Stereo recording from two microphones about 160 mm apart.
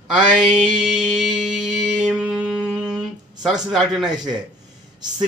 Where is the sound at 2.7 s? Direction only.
5° right (ahead or behind).